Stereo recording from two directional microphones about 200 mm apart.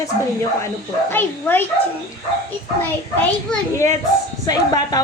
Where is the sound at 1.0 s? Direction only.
10° left (ahead or behind).